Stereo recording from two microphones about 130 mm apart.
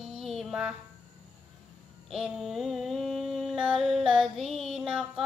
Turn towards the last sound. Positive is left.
turn(degrees=-5)  # may be behind; listen again after turning